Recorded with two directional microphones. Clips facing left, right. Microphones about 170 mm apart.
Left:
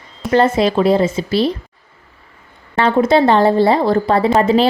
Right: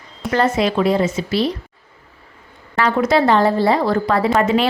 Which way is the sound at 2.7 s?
25° left (ahead or behind).